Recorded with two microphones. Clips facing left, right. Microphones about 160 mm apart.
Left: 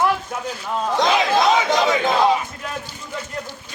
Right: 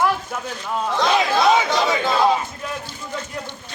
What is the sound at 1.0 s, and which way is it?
Speech, 20° left (ahead or behind).